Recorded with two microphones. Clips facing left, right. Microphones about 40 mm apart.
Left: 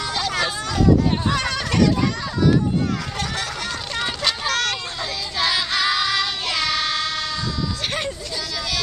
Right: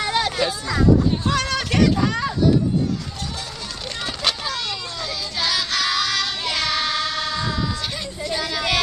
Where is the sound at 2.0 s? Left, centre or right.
Right.